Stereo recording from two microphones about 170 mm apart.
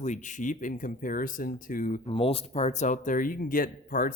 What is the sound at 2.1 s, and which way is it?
Speech, 35° left (ahead or behind).